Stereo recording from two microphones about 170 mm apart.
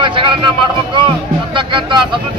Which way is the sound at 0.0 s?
30° right (ahead or behind).